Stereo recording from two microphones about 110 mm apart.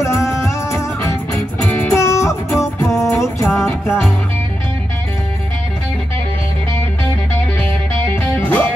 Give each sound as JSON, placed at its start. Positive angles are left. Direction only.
{"t": 0.0, "sound": "music", "side_deg": 25}
{"t": 8.2, "sound": "music", "side_deg": 20}